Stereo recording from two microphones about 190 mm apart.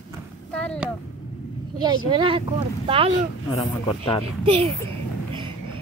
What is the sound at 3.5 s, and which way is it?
Speech, 25° left (ahead or behind).